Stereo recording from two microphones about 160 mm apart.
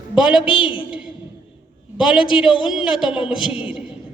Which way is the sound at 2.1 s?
30° left (ahead or behind).